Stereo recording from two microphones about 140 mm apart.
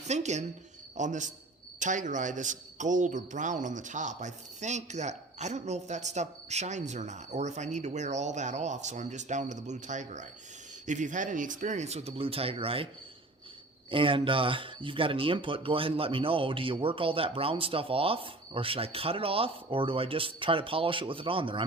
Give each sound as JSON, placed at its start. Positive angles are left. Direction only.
{"t": 0.1, "sound": "a man's voice", "side_deg": -55}
{"t": 13.9, "sound": "speech", "side_deg": -40}